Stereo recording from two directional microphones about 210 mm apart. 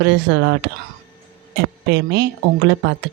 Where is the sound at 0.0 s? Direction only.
55° right (ahead or behind).